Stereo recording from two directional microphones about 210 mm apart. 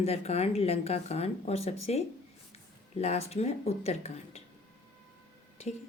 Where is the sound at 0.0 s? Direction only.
30° left (ahead or behind).